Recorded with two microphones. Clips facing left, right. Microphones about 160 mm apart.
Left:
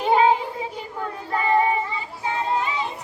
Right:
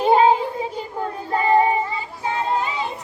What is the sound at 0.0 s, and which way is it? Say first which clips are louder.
Child singing: right 3 dB; 35° right (ahead or behind).